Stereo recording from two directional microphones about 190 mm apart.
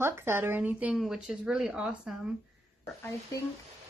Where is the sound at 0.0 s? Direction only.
10° right (ahead or behind).